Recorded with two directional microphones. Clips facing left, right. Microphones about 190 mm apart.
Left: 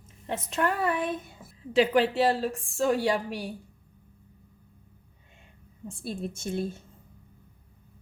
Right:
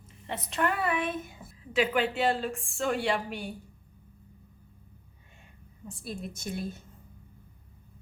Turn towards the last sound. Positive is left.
turn(degrees=25)  # may be behind; listen again after turning